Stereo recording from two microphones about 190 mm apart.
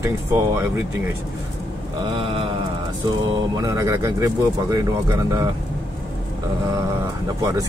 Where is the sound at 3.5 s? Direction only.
15° right (ahead or behind).